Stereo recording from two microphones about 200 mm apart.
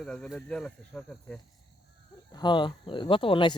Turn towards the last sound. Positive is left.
turn(degrees=25)  # may be behind; listen again after turning